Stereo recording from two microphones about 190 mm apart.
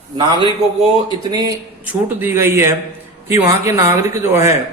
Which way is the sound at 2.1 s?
10° right (ahead or behind).